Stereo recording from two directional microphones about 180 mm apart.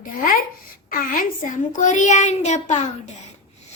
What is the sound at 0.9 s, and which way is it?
A woman's voice, 50° left (ahead or behind).